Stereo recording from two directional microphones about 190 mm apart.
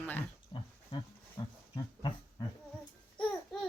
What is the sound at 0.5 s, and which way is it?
Pig, 25° left (ahead or behind).